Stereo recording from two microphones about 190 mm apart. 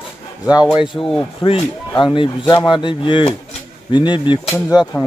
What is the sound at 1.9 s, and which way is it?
Speech, 25° left (ahead or behind).